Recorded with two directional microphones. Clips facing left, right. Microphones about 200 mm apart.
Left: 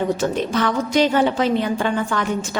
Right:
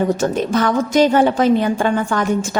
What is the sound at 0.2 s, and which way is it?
A woman's voice, 45° right (ahead or behind).